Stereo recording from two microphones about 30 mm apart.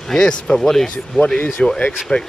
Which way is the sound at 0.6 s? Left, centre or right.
Centre.